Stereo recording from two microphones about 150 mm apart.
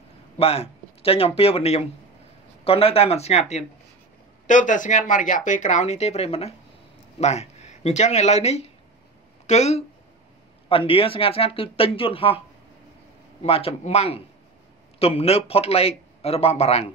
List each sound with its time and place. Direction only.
0.4 s a man's voice: 40° left (ahead or behind)
4.5 s a man's voice: 60° left (ahead or behind)
10.9 s speech: 40° left (ahead or behind)
13.4 s a man's voice: 40° left (ahead or behind)